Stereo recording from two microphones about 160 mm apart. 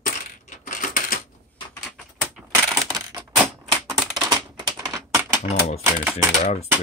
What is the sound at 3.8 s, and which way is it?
Typewriter, centre (ahead or behind).